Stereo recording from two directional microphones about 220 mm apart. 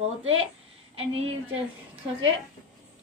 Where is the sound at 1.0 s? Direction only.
25° right (ahead or behind).